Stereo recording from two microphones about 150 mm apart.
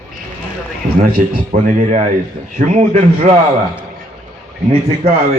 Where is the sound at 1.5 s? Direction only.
55° right (ahead or behind).